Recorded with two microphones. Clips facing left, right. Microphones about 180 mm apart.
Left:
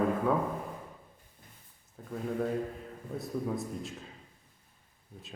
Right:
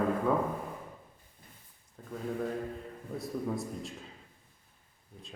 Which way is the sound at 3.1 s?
Centre (ahead or behind).